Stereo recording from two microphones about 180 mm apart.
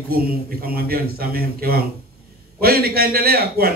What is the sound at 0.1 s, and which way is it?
A man's voice, 55° right (ahead or behind).